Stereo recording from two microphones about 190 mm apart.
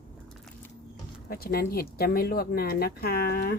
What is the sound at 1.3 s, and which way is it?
Speech, 55° left (ahead or behind).